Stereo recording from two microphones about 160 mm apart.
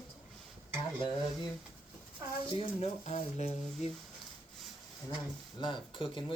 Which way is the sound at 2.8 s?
40° left (ahead or behind).